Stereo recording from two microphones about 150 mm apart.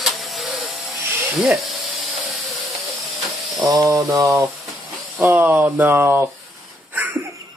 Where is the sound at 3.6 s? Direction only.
20° right (ahead or behind).